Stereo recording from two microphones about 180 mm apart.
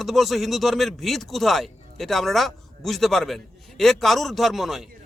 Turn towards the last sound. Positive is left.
turn(degrees=0)  # may be behind; listen again after turning